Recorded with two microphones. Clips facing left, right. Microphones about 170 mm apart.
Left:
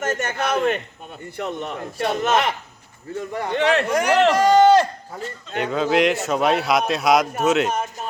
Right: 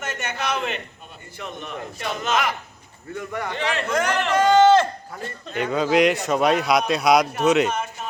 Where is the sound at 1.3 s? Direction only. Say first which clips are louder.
Left 5 dB; 65° left (ahead or behind).